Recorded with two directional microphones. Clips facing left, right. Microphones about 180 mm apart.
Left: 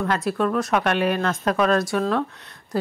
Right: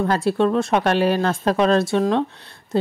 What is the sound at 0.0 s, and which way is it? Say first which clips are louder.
Speech: right 4 dB; 30° right (ahead or behind).